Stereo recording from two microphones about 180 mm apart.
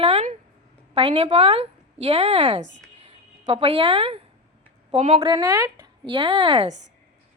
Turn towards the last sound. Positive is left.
turn(degrees=-35)  # may be behind; listen again after turning